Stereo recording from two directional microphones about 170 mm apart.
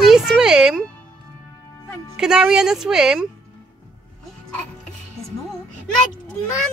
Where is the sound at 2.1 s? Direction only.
5° right (ahead or behind).